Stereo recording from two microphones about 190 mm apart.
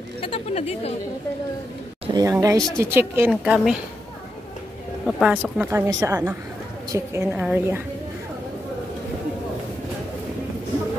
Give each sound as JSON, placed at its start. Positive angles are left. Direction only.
{"t": 0.2, "sound": "speech", "side_deg": 30}
{"t": 2.1, "sound": "speech", "side_deg": -15}
{"t": 5.0, "sound": "speech", "side_deg": 0}